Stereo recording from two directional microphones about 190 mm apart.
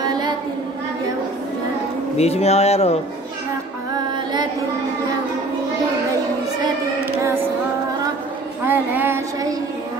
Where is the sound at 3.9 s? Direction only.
20° right (ahead or behind).